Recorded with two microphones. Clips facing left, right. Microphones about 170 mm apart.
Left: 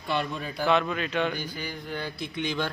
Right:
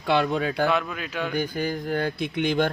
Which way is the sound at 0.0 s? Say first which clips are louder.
Right 7 dB; 85° right.